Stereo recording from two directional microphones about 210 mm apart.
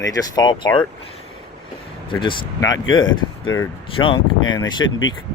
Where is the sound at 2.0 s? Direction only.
25° left (ahead or behind).